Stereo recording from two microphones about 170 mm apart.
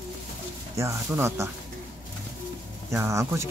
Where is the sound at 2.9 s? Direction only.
15° right (ahead or behind).